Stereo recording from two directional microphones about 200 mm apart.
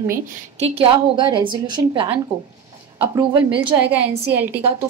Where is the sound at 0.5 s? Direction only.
30° right (ahead or behind).